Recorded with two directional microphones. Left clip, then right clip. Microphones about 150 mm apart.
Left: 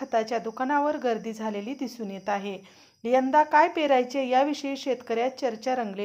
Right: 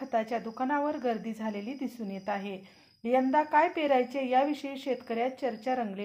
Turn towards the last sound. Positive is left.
turn(degrees=35)  # may be behind; listen again after turning